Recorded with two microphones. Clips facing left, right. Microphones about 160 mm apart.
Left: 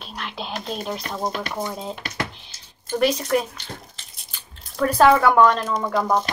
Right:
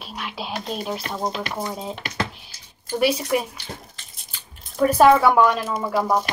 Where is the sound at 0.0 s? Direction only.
5° right (ahead or behind).